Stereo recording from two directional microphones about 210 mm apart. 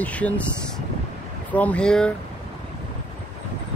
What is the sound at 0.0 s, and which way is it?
Speech, 5° left (ahead or behind).